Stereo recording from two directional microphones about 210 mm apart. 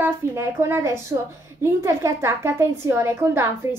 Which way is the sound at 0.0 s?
10° right (ahead or behind).